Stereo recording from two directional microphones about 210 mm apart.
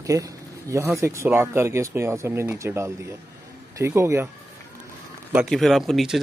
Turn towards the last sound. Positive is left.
turn(degrees=0)  # may be behind; listen again after turning